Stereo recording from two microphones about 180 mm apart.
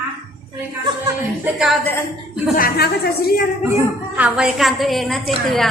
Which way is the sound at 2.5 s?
50° left (ahead or behind).